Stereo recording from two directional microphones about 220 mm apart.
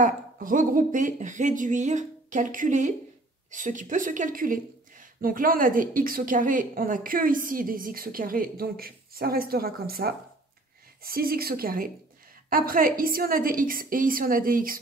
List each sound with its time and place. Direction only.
0.0 s a woman's voice: 40° right (ahead or behind)